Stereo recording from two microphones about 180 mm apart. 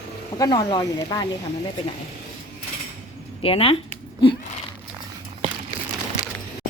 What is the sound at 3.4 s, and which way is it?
Speech, 30° left (ahead or behind).